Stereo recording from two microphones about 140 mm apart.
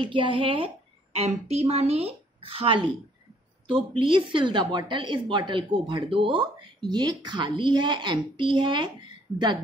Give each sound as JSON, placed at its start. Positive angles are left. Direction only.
{"t": 0.0, "sound": "speech", "side_deg": -40}
{"t": 1.1, "sound": "a woman's voice", "side_deg": -50}